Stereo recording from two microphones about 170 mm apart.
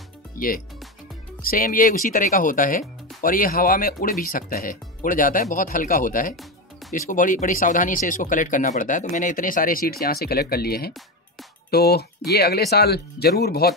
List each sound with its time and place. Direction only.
0.3 s music: 55° left (ahead or behind)
1.4 s speech: 60° left (ahead or behind)